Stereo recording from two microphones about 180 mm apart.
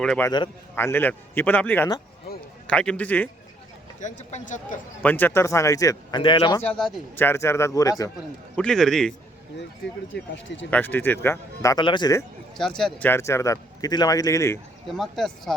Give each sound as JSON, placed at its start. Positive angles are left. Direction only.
{"t": 0.0, "sound": "speech", "side_deg": 5}
{"t": 0.3, "sound": "a man's voice", "side_deg": 25}
{"t": 0.8, "sound": "speech", "side_deg": 10}
{"t": 4.3, "sound": "speech", "side_deg": 40}
{"t": 5.0, "sound": "speech", "side_deg": 10}
{"t": 6.6, "sound": "speech", "side_deg": 5}
{"t": 7.2, "sound": "speech", "side_deg": 15}
{"t": 8.5, "sound": "speech", "side_deg": 5}
{"t": 10.1, "sound": "speech", "side_deg": 90}
{"t": 10.7, "sound": "speech", "side_deg": 10}
{"t": 12.5, "sound": "speech", "side_deg": 0}
{"t": 14.8, "sound": "speech", "side_deg": 0}